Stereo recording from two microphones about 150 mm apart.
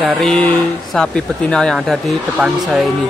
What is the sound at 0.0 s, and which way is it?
Speech, centre (ahead or behind).